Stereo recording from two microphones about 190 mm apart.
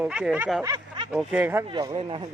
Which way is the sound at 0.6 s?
20° right (ahead or behind).